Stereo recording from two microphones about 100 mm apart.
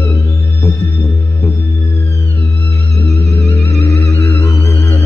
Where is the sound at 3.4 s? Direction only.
25° left (ahead or behind).